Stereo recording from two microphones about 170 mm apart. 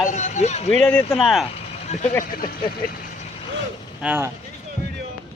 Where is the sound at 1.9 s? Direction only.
40° left (ahead or behind).